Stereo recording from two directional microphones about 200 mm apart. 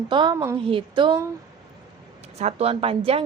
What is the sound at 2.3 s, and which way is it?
Speech, 30° right (ahead or behind).